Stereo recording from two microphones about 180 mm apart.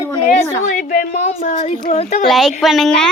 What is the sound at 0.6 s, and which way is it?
A woman's voice, 45° left (ahead or behind).